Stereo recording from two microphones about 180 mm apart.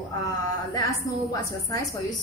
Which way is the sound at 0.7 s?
20° left (ahead or behind).